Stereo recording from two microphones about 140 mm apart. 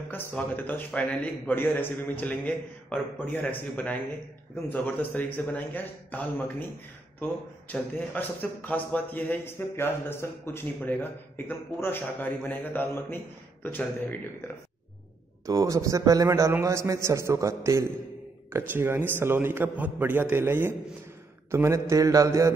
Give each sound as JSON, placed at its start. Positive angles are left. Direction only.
{"t": 0.1, "sound": "a man's voice", "side_deg": 15}
{"t": 7.7, "sound": "a man's voice", "side_deg": 10}
{"t": 15.4, "sound": "a man's voice", "side_deg": -25}